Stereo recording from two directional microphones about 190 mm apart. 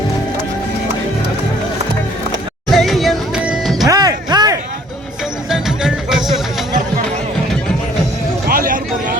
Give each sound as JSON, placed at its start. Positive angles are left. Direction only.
{"t": 2.6, "sound": "music", "side_deg": 0}
{"t": 3.8, "sound": "music", "side_deg": -20}
{"t": 5.5, "sound": "music", "side_deg": 0}
{"t": 8.4, "sound": "vehicle", "side_deg": -50}